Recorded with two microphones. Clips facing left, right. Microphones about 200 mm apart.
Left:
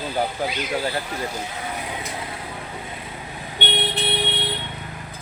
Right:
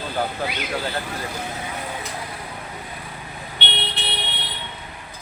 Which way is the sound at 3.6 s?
45° left (ahead or behind).